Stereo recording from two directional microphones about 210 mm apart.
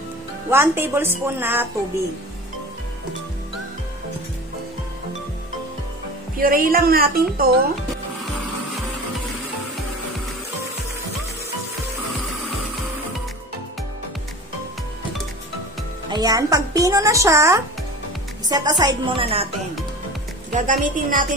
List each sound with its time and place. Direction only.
0.5 s speech: 10° right (ahead or behind)
6.4 s speech: 45° right (ahead or behind)
16.1 s a woman's voice: 15° right (ahead or behind)
20.5 s a woman's voice: 40° right (ahead or behind)